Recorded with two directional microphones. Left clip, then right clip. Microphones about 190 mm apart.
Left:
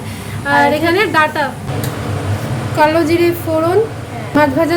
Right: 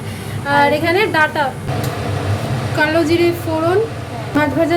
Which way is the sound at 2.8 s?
15° left (ahead or behind).